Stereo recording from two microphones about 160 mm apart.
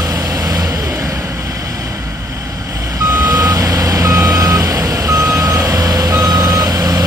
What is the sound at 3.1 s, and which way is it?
Reversing beeps, 15° right (ahead or behind).